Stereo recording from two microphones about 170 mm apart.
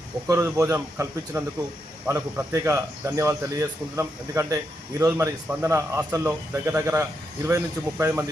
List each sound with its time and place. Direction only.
0.3 s speech: 15° right (ahead or behind)